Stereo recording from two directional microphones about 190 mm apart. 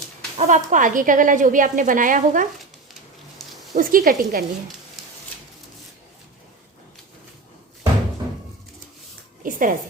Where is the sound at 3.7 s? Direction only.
45° right (ahead or behind).